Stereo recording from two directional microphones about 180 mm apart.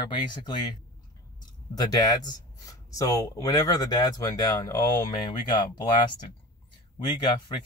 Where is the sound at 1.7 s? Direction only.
20° left (ahead or behind).